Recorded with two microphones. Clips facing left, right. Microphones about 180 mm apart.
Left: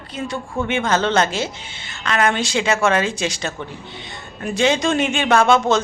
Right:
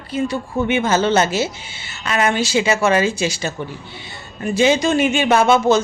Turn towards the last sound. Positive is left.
turn(degrees=-5)  # may be behind; listen again after turning